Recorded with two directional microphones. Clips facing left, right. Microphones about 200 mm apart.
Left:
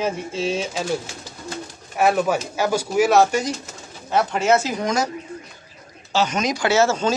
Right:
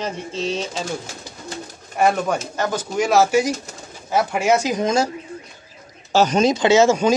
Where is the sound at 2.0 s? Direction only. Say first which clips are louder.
Even; 5° left (ahead or behind); by 5.0 s 20° right (ahead or behind).